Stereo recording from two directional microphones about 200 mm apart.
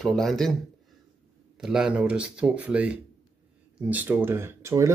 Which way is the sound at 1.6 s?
5° right (ahead or behind).